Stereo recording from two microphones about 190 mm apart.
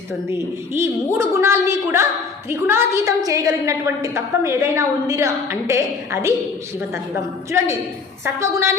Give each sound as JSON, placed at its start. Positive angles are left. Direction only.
{"t": 0.3, "sound": "a woman's voice", "side_deg": -15}
{"t": 8.2, "sound": "a woman's voice", "side_deg": -15}